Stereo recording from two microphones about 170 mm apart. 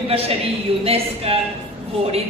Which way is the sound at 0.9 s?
35° right (ahead or behind).